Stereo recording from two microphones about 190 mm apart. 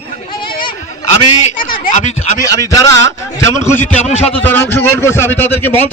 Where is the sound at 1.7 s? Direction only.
45° left (ahead or behind).